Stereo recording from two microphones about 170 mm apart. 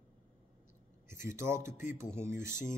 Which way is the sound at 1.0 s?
15° right (ahead or behind).